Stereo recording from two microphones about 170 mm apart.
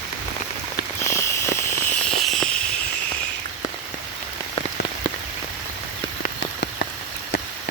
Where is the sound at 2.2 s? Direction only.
Centre (ahead or behind).